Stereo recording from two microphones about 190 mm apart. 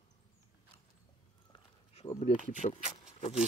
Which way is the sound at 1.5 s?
30° left (ahead or behind).